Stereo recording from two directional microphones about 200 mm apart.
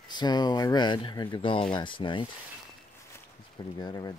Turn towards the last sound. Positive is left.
turn(degrees=20)  # may be behind; listen again after turning